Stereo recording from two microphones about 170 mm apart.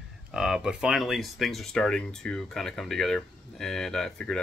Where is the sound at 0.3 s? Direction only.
5° right (ahead or behind).